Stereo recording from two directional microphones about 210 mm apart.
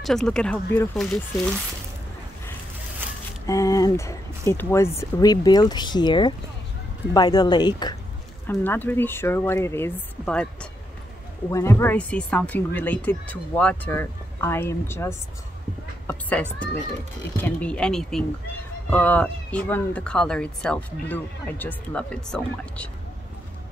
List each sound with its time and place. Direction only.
0.0 s speech: 5° left (ahead or behind)
3.4 s speech: 15° left (ahead or behind)
8.5 s speech: 10° left (ahead or behind)